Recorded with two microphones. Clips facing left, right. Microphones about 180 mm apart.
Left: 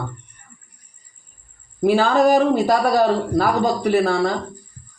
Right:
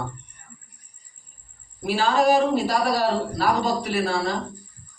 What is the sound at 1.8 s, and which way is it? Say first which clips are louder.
A man's voice: left 5 dB; 55° left (ahead or behind).